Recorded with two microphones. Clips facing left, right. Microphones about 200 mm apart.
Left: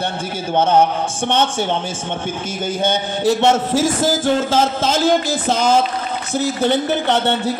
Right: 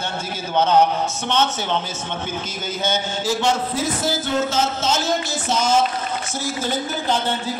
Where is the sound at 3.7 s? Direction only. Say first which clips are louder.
Left 7 dB; 90° left.